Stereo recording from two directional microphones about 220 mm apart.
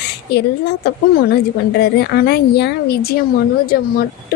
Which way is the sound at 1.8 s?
45° left (ahead or behind).